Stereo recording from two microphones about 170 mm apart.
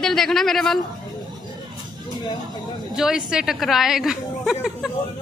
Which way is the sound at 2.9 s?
5° right (ahead or behind).